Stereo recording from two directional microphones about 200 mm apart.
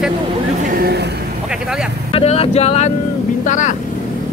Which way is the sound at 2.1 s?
30° left (ahead or behind).